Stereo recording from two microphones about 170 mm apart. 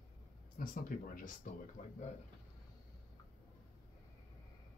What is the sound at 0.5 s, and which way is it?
Speech, 55° left (ahead or behind).